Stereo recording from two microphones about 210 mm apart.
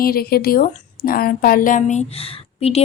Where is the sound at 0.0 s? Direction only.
45° left (ahead or behind).